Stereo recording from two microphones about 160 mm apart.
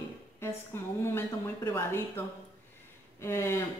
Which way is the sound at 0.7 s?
15° left (ahead or behind).